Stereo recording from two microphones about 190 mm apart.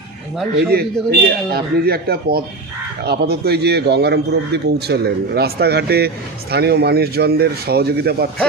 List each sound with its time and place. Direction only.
0.5 s speech: 60° right (ahead or behind)